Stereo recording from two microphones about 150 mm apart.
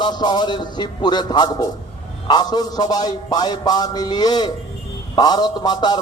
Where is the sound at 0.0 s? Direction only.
30° left (ahead or behind).